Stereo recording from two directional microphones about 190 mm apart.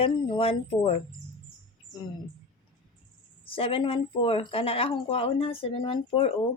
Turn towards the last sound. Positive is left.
turn(degrees=30)  # may be behind; listen again after turning